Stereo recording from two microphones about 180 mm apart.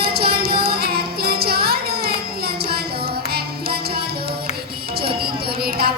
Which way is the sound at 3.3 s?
60° right (ahead or behind).